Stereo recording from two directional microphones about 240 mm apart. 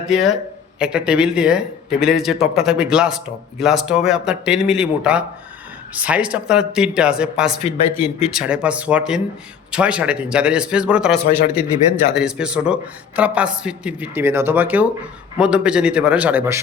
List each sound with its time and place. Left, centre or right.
0.1 s speech: centre